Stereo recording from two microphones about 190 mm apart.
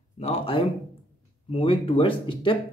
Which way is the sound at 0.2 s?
30° left (ahead or behind).